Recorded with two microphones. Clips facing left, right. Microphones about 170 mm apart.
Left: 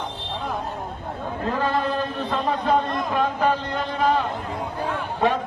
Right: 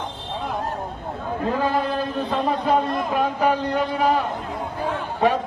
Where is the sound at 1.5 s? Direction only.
10° right (ahead or behind).